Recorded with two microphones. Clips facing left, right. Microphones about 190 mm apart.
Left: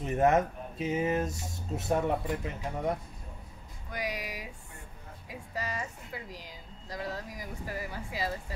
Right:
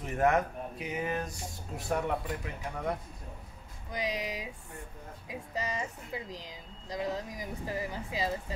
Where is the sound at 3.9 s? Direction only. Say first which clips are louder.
Right 2 dB; 20° right (ahead or behind).